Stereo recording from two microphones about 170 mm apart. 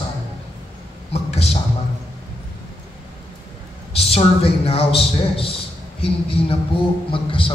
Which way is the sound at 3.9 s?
35° left (ahead or behind).